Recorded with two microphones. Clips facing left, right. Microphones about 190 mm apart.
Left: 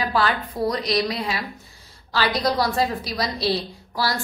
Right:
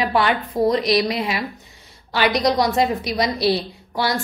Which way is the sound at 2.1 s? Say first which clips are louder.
Right 4 dB; 20° right (ahead or behind).